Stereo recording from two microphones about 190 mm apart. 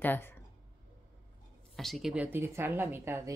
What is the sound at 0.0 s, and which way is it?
Speech, 10° left (ahead or behind).